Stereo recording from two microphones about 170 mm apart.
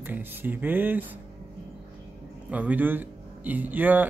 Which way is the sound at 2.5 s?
10° right (ahead or behind).